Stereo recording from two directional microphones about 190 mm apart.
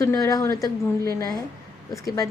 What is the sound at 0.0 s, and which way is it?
A woman's voice, 15° left (ahead or behind).